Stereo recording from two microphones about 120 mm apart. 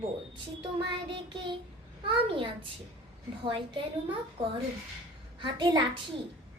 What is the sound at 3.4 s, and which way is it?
Speech, 45° right (ahead or behind).